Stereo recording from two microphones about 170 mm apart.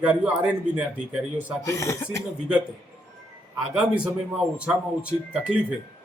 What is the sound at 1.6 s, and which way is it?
Speech, 20° left (ahead or behind).